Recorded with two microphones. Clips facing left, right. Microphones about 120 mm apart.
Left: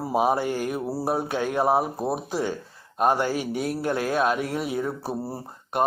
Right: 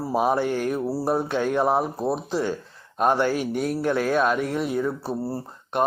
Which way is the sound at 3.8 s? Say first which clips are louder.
Right 4 dB; 45° left (ahead or behind).